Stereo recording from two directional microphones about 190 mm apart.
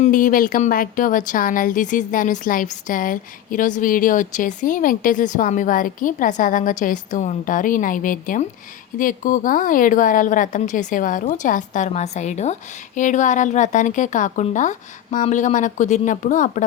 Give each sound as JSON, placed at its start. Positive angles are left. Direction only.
{"t": 0.0, "sound": "a woman's voice", "side_deg": 45}